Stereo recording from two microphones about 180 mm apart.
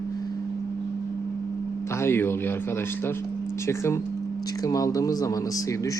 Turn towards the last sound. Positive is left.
turn(degrees=20)  # may be behind; listen again after turning